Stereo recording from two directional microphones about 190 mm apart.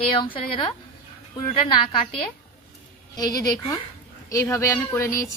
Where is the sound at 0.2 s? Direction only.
25° left (ahead or behind).